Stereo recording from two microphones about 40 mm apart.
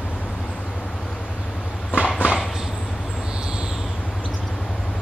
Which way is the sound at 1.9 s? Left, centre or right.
Right.